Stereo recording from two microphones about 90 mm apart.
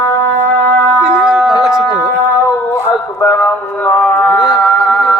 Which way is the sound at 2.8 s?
25° left (ahead or behind).